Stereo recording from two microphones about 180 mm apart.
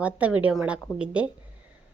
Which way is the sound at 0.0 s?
5° right (ahead or behind).